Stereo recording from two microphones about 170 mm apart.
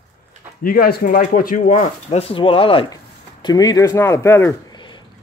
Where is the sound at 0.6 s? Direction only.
60° left (ahead or behind); by 5.0 s 25° left (ahead or behind).